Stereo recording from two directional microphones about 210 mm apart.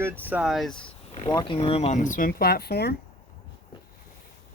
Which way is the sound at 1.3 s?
20° left (ahead or behind).